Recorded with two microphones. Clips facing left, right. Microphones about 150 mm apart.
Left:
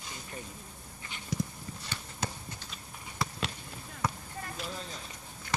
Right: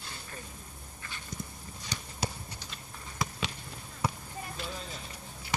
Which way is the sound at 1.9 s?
15° right (ahead or behind).